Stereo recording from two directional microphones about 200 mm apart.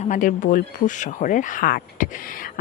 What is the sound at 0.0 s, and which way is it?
Speech, 40° left (ahead or behind).